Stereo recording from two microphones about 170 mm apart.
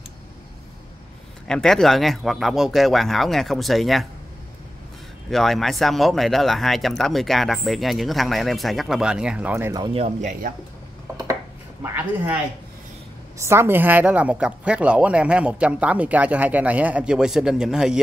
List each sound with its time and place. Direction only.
1.5 s speech: centre (ahead or behind)
5.3 s speech: centre (ahead or behind)
9.8 s speech: 40° right (ahead or behind)
11.8 s speech: 10° right (ahead or behind)
13.4 s speech: 15° right (ahead or behind)